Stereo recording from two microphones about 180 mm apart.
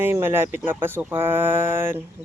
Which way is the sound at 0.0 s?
10° right (ahead or behind).